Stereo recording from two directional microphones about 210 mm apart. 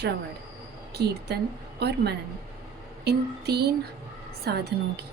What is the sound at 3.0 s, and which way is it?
A woman's voice, 50° right (ahead or behind).